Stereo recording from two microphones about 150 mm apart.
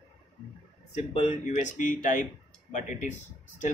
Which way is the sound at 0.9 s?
50° left (ahead or behind).